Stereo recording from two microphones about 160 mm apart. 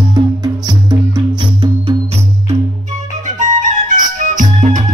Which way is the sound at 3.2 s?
50° right (ahead or behind).